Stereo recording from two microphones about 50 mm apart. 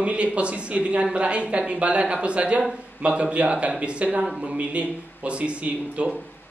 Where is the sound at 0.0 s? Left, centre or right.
Right.